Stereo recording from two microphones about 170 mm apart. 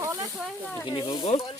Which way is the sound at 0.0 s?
20° right (ahead or behind).